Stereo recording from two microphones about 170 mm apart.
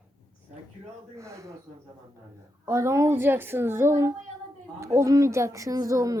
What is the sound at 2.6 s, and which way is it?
A woman's voice, 15° right (ahead or behind).